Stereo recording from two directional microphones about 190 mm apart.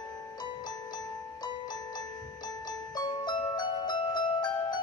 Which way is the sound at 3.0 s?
20° left (ahead or behind).